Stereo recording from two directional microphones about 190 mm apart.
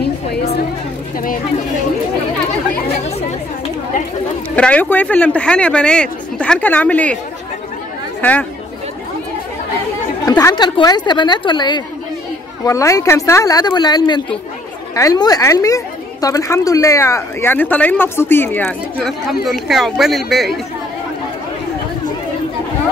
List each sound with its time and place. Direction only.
1.1 s speech: 45° left (ahead or behind)
4.6 s a woman's voice: 5° left (ahead or behind)
8.2 s speech: 5° left (ahead or behind)
10.2 s a woman's voice: 20° left (ahead or behind); by 20.6 s centre (ahead or behind)